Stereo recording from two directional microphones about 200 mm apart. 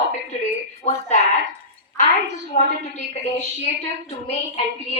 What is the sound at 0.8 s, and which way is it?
Speech, 35° left (ahead or behind).